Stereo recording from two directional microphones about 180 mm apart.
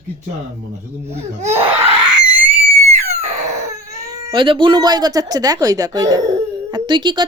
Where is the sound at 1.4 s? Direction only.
40° right (ahead or behind).